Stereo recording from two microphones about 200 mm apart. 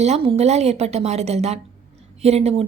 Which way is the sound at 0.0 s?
30° right (ahead or behind).